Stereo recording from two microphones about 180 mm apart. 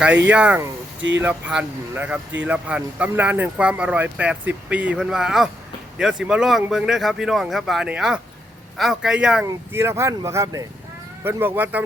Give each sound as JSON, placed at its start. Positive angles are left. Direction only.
{"t": 0.0, "sound": "speech", "side_deg": -10}